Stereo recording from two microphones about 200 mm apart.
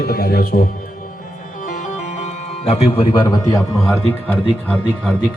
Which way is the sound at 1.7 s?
40° left (ahead or behind).